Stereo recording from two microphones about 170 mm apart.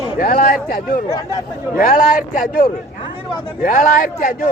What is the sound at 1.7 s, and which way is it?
A man's voice, 50° left (ahead or behind).